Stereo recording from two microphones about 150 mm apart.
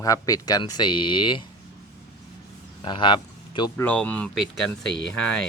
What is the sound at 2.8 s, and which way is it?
Speech, 30° left (ahead or behind).